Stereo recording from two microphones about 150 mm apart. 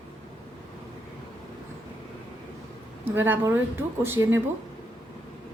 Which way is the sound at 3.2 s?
15° right (ahead or behind).